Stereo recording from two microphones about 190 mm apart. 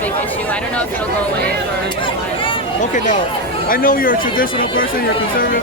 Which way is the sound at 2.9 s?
40° left (ahead or behind).